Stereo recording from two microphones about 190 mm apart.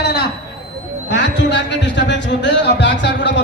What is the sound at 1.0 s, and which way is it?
Music, 65° left (ahead or behind).